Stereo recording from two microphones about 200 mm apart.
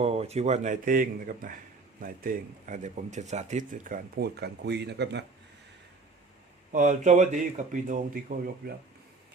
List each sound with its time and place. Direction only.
0.0 s speech: 30° right (ahead or behind); by 5.2 s 55° right (ahead or behind)
6.7 s speech: 40° right (ahead or behind)